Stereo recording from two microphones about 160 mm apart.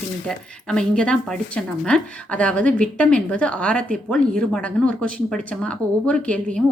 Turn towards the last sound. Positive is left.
turn(degrees=5)  # may be behind; listen again after turning